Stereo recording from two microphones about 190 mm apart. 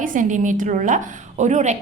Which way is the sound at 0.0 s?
45° right (ahead or behind).